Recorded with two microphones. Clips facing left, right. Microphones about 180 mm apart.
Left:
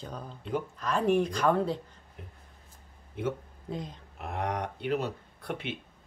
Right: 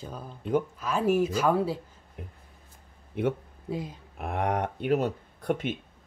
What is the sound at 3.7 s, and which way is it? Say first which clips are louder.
Speech: right 4 dB; 5° right (ahead or behind).